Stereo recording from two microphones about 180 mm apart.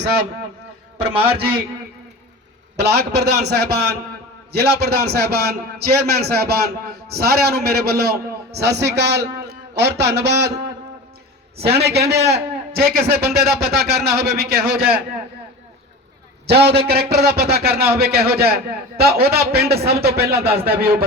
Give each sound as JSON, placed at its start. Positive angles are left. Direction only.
{"t": 0.0, "sound": "a man's voice", "side_deg": -65}
{"t": 2.7, "sound": "a man's voice", "side_deg": -70}
{"t": 11.8, "sound": "a man's voice", "side_deg": -65}
{"t": 16.5, "sound": "a man's voice", "side_deg": -65}